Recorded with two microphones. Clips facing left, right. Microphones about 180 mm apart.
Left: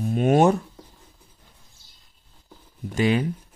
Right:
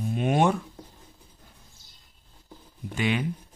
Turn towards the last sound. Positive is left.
turn(degrees=40)  # may be behind; listen again after turning